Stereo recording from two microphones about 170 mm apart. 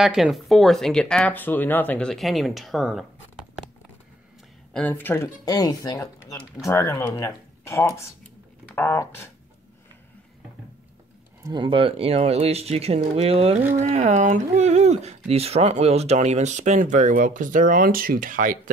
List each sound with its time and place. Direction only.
0.0 s speech: centre (ahead or behind)
4.7 s speech: 10° left (ahead or behind)
11.4 s speech: 30° right (ahead or behind); by 18.6 s 50° right (ahead or behind)